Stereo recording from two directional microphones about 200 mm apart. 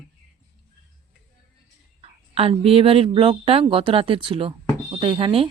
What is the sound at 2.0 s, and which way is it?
A woman's voice, 30° right (ahead or behind).